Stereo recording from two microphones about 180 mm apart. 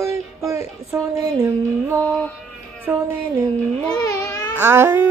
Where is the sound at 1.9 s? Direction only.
10° left (ahead or behind).